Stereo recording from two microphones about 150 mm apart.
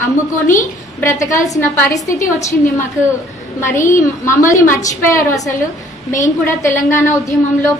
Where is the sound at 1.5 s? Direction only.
20° left (ahead or behind).